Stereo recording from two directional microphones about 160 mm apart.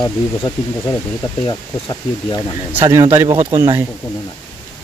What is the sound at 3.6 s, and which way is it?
Speech, 20° right (ahead or behind).